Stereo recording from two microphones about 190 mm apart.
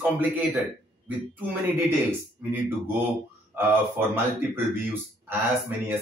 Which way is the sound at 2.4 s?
10° right (ahead or behind).